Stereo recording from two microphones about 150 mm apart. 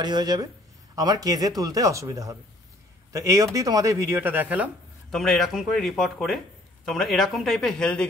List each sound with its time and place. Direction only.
0.0 s speech: 30° right (ahead or behind); by 4.6 s 10° right (ahead or behind)
5.1 s speech: centre (ahead or behind)